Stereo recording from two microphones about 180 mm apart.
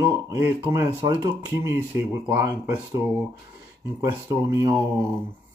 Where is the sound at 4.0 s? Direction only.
15° right (ahead or behind).